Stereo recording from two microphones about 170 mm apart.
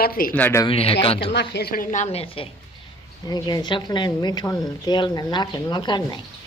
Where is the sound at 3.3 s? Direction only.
25° left (ahead or behind).